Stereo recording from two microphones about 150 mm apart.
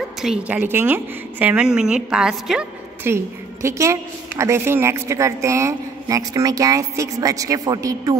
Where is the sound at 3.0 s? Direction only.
20° right (ahead or behind).